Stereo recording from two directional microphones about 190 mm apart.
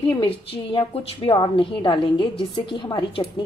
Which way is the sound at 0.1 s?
25° left (ahead or behind).